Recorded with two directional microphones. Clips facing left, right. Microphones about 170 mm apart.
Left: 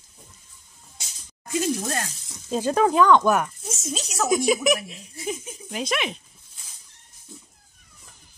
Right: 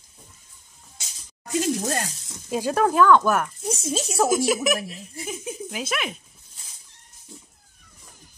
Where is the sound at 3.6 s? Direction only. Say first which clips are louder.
Right 5 dB; 30° right (ahead or behind).